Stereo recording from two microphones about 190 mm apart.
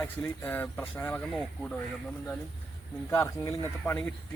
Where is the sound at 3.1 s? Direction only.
15° left (ahead or behind).